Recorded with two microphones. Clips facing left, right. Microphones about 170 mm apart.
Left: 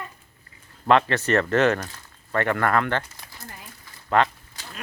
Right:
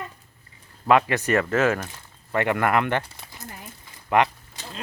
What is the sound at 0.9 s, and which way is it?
Speech, 10° right (ahead or behind).